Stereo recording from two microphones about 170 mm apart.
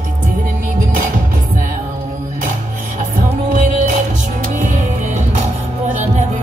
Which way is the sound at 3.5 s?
50° right (ahead or behind).